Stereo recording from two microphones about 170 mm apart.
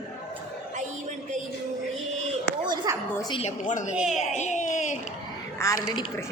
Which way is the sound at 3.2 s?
25° left (ahead or behind).